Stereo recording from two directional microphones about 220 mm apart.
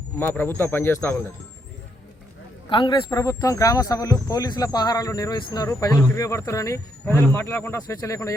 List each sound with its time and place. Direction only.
0.2 s speech: 10° left (ahead or behind)
2.6 s speech: 20° left (ahead or behind)